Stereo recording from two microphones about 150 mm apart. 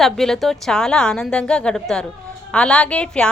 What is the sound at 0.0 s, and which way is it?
A woman's voice, centre (ahead or behind).